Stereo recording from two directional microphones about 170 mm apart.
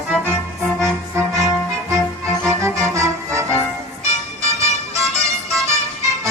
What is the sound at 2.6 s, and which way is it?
Music, 15° right (ahead or behind).